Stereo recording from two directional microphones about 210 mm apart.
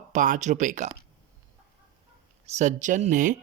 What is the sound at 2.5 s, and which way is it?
Speech, 35° right (ahead or behind).